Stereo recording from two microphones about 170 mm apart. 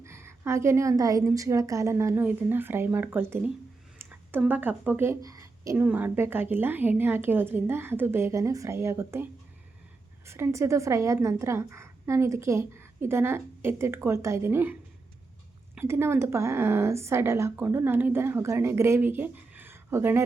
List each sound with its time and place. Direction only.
0.0 s speech: 15° right (ahead or behind)